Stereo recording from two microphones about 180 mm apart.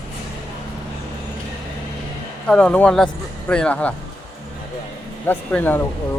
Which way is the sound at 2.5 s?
5° left (ahead or behind).